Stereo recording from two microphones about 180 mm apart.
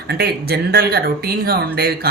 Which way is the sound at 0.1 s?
60° right (ahead or behind).